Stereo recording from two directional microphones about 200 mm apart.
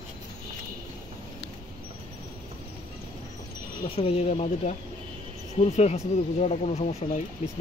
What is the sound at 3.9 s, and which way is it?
Speech, 30° left (ahead or behind).